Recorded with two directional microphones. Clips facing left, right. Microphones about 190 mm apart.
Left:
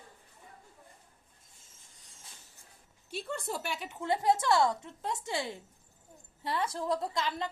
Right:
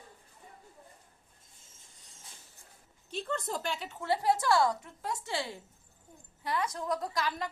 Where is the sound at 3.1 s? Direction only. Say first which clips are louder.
Right 2 dB; 10° left (ahead or behind).